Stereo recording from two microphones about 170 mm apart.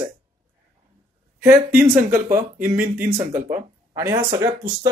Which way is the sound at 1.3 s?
10° right (ahead or behind).